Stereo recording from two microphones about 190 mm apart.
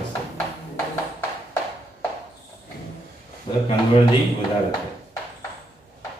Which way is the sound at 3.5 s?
25° left (ahead or behind).